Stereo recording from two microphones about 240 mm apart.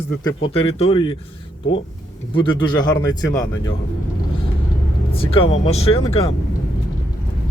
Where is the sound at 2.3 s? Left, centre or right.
Centre.